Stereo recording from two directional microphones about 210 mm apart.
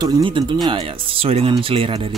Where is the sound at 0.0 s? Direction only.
20° right (ahead or behind).